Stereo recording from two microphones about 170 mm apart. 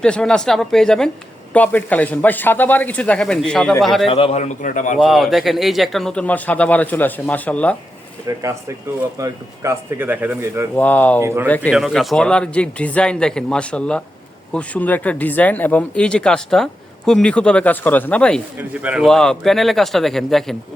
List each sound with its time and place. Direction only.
0.0 s speech: 5° left (ahead or behind)
4.1 s a man's voice: 35° left (ahead or behind)
4.9 s speech: centre (ahead or behind)
8.4 s speech: 20° right (ahead or behind)
10.8 s speech: 10° left (ahead or behind)
11.2 s speech: 15° right (ahead or behind)
11.4 s speech: 10° left (ahead or behind)